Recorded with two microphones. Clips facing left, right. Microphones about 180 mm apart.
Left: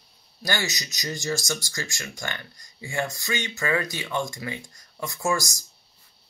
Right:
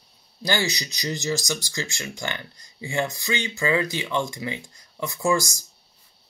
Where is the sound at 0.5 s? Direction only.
25° right (ahead or behind).